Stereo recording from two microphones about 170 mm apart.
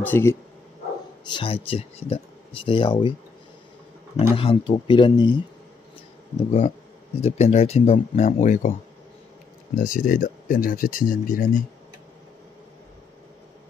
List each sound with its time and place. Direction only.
0.0 s speech: 15° left (ahead or behind)
1.2 s speech: 30° left (ahead or behind)
4.4 s speech: 30° left (ahead or behind)
6.3 s speech: 40° left (ahead or behind)
9.8 s speech: 55° left (ahead or behind)